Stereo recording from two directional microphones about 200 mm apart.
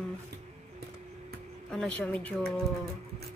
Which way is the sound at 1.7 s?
5° left (ahead or behind).